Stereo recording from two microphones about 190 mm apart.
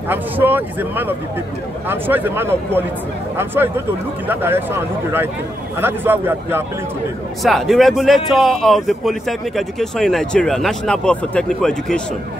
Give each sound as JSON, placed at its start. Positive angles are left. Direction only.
{"t": 0.1, "sound": "speech", "side_deg": -10}
{"t": 5.8, "sound": "speech", "side_deg": -10}
{"t": 7.4, "sound": "speech", "side_deg": 0}